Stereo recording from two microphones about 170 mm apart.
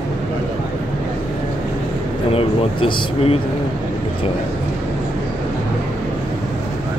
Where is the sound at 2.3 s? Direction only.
35° left (ahead or behind).